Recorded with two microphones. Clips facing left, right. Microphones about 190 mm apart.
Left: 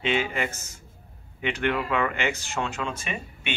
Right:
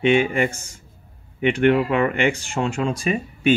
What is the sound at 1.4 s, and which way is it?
Speech, 25° right (ahead or behind).